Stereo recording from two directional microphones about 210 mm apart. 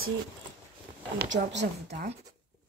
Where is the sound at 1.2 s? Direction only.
55° right (ahead or behind).